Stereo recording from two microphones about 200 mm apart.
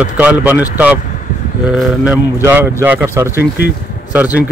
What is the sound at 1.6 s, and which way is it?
Speech, 5° right (ahead or behind).